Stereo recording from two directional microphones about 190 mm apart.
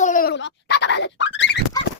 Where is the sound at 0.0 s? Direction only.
45° left (ahead or behind).